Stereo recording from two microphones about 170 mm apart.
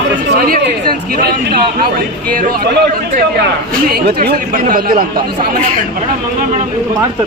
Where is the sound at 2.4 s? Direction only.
60° right (ahead or behind).